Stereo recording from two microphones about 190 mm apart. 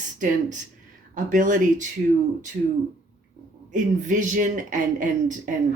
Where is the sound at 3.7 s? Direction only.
40° right (ahead or behind).